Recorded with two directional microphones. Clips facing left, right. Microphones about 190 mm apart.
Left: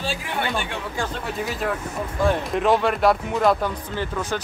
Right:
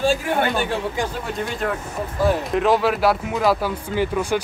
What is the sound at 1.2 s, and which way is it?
A man's voice, centre (ahead or behind).